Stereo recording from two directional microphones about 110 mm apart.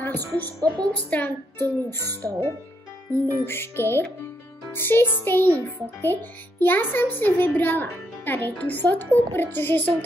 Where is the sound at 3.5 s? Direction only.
20° left (ahead or behind).